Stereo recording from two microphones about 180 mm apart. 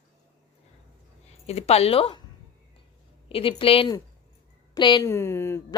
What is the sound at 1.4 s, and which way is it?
Speech, 35° left (ahead or behind).